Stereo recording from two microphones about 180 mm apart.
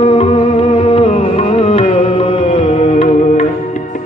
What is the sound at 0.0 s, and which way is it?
Music, 30° left (ahead or behind).